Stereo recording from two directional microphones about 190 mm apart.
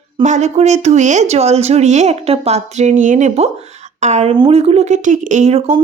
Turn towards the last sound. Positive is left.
turn(degrees=-40)  # may be behind; listen again after turning